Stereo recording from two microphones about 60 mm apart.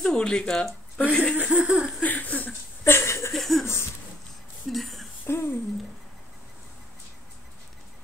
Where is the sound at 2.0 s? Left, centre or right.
Left.